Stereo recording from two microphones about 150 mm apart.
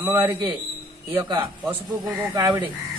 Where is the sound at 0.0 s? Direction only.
15° right (ahead or behind).